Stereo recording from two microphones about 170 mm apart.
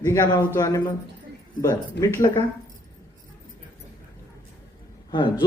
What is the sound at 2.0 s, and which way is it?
Speech, 15° left (ahead or behind).